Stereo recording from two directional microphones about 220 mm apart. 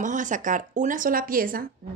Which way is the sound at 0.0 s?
35° right (ahead or behind).